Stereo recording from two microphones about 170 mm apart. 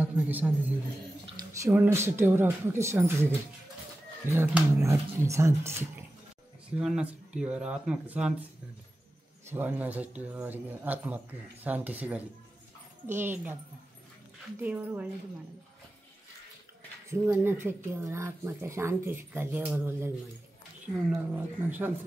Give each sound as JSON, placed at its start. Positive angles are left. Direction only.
{"t": 0.0, "sound": "a man's voice", "side_deg": -10}
{"t": 6.7, "sound": "speech", "side_deg": -5}
{"t": 9.5, "sound": "speech", "side_deg": -10}
{"t": 14.6, "sound": "speech", "side_deg": -10}
{"t": 17.1, "sound": "speech", "side_deg": -10}
{"t": 21.1, "sound": "speech", "side_deg": -10}